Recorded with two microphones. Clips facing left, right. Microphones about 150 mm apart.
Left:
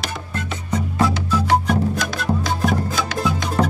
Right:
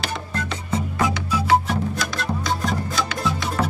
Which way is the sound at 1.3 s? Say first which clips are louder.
Left 1 dB; 10° right (ahead or behind).